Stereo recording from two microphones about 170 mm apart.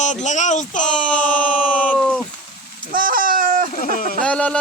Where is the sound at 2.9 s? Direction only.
55° right (ahead or behind).